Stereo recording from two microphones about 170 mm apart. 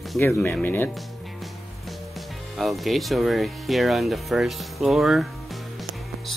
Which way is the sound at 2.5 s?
Centre (ahead or behind).